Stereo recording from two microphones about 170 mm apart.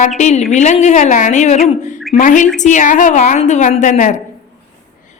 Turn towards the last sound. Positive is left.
turn(degrees=45)  # may be behind; listen again after turning